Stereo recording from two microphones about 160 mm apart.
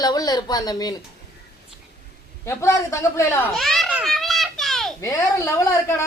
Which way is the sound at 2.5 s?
20° left (ahead or behind).